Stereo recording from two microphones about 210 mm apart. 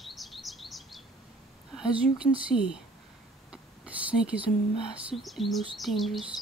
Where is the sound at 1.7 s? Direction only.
5° right (ahead or behind).